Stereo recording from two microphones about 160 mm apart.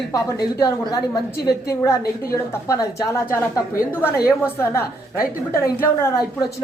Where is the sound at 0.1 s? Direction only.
25° left (ahead or behind).